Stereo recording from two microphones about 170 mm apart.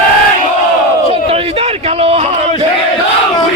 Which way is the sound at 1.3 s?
35° right (ahead or behind).